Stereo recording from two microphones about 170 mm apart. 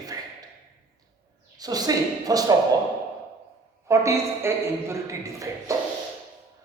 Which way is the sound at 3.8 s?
15° right (ahead or behind).